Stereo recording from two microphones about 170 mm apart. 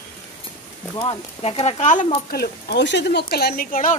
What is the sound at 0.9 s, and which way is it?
Speech, 35° left (ahead or behind).